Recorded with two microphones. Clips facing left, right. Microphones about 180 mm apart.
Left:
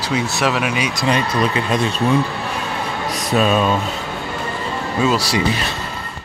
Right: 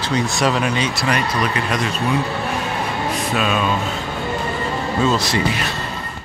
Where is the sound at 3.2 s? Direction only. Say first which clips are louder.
Left 6 dB; 40° left (ahead or behind).